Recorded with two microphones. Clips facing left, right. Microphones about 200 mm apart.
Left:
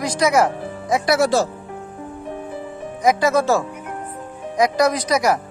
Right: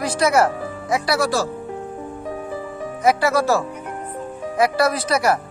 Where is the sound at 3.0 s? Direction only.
15° left (ahead or behind).